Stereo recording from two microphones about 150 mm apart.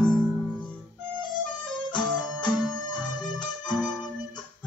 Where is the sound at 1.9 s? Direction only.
30° left (ahead or behind).